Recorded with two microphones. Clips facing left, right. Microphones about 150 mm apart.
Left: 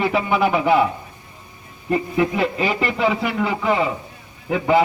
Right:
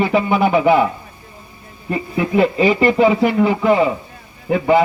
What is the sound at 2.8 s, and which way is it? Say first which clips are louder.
Speech: right 8 dB; 45° right (ahead or behind).